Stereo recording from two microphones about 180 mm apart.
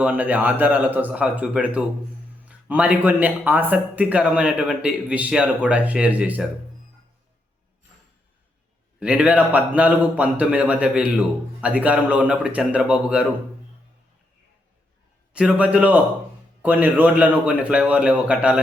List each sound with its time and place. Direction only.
0.0 s a man's voice: 10° right (ahead or behind)
9.0 s a man's voice: 5° right (ahead or behind)
15.3 s a man's voice: 5° right (ahead or behind)